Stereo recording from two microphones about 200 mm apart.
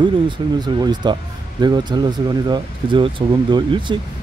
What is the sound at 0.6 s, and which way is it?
Speech, 20° right (ahead or behind).